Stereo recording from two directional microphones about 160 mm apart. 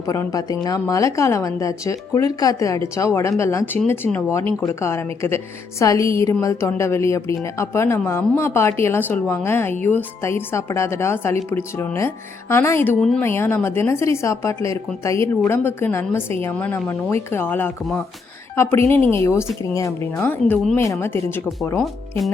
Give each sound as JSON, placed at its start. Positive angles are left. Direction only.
{"t": 0.1, "sound": "a woman's voice", "side_deg": 20}
{"t": 20.7, "sound": "speech", "side_deg": 15}